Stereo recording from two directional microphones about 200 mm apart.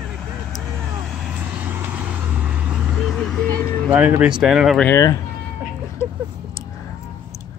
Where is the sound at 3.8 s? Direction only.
5° right (ahead or behind).